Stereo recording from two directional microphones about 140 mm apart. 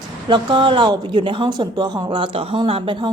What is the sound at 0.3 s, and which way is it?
A woman's voice, 35° right (ahead or behind).